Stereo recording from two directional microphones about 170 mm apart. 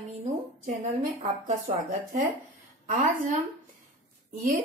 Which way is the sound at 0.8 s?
45° right (ahead or behind).